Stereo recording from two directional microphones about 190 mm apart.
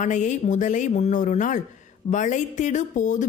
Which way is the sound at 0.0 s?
40° left (ahead or behind).